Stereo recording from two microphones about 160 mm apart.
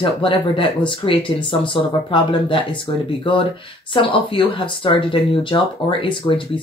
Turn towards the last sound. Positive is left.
turn(degrees=30)  # may be behind; listen again after turning